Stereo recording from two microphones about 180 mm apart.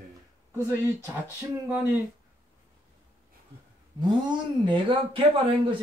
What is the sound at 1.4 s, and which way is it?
Speech, 10° right (ahead or behind).